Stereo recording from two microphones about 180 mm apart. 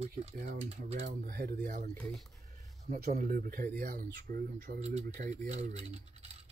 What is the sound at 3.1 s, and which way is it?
Speech, 50° right (ahead or behind).